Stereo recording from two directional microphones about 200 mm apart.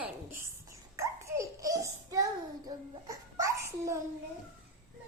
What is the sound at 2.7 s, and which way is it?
A child's voice, 15° right (ahead or behind).